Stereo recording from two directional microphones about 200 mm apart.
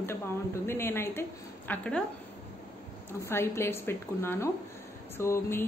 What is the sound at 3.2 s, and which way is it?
Speech, 10° left (ahead or behind).